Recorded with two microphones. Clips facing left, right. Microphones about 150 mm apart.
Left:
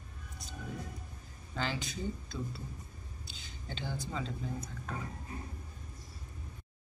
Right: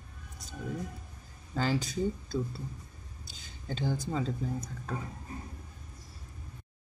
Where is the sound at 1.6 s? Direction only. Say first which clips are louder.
Right 6 dB; 40° right (ahead or behind).